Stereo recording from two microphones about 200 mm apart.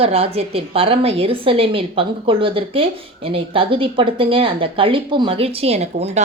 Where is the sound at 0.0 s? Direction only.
30° right (ahead or behind).